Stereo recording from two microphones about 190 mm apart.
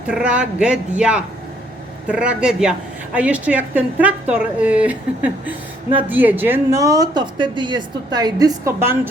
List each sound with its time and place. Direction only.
0.1 s a woman's voice: 5° right (ahead or behind)